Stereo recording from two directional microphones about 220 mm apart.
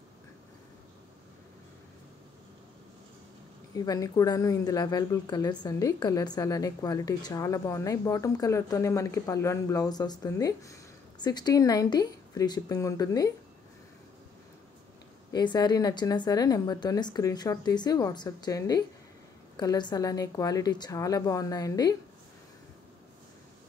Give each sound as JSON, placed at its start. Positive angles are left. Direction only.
{"t": 3.7, "sound": "speech", "side_deg": 15}
{"t": 15.3, "sound": "speech", "side_deg": 20}